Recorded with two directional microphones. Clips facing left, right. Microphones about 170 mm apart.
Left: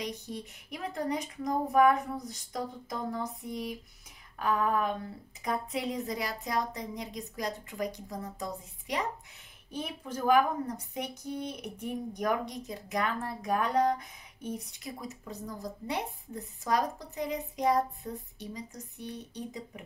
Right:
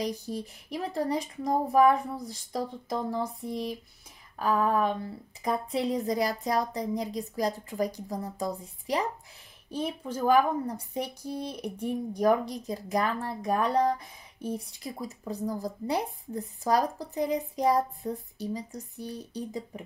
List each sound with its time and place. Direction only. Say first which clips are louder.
0.0 s speech: right 5 dB; 35° right (ahead or behind)